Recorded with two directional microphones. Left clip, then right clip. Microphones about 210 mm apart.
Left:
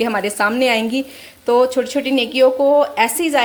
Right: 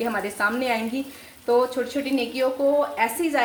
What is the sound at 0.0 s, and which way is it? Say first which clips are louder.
A woman's voice: left 7 dB; 40° left (ahead or behind).